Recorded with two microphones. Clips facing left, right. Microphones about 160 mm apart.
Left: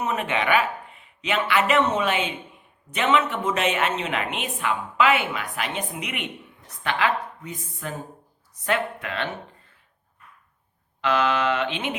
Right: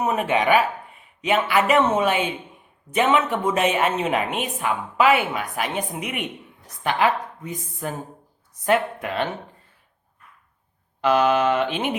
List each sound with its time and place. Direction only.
0.3 s a woman's voice: 40° right (ahead or behind)
11.0 s a woman's voice: 45° right (ahead or behind)